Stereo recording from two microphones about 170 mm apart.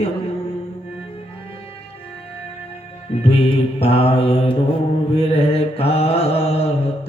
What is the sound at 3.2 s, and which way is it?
A man's voice, 35° left (ahead or behind).